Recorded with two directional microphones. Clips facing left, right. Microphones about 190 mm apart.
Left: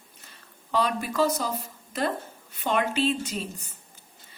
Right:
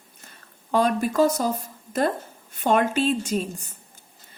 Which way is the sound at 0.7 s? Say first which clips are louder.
Right 5 dB; 45° right (ahead or behind).